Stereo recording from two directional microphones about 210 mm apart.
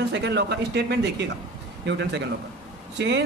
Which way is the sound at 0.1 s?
55° right (ahead or behind).